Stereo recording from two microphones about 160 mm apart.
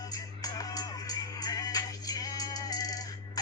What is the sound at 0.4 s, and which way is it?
Music, 25° left (ahead or behind).